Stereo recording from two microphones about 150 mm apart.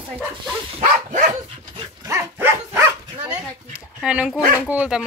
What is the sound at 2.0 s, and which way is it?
Dog, 15° right (ahead or behind).